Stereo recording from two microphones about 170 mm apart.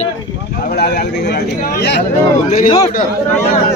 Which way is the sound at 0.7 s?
70° left (ahead or behind).